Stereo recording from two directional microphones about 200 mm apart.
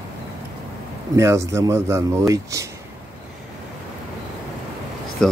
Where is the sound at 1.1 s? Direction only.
15° right (ahead or behind).